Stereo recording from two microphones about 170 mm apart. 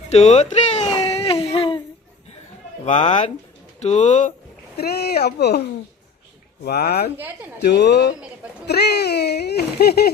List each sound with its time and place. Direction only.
0.1 s speech: 40° left (ahead or behind)
1.1 s a sound: 35° left (ahead or behind)
2.8 s speech: 45° left (ahead or behind)
4.8 s speech: 70° left (ahead or behind)
6.7 s speech: 65° left (ahead or behind)
7.6 s speech: 75° left (ahead or behind)
8.6 s a sound: 75° left (ahead or behind)